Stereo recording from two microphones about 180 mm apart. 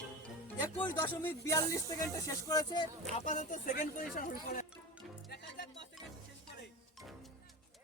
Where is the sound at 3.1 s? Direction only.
45° left (ahead or behind).